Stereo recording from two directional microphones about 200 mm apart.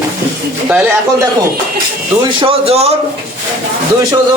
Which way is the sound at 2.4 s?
30° right (ahead or behind).